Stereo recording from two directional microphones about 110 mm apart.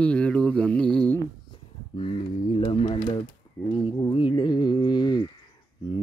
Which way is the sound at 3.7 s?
50° left (ahead or behind).